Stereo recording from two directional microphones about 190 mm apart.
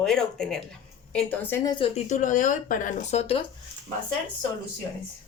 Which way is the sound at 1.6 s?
25° left (ahead or behind).